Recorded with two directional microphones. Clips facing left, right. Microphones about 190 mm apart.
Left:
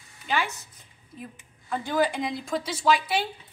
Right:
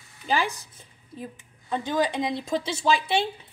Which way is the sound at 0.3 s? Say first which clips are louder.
Right 3 dB; 35° right (ahead or behind).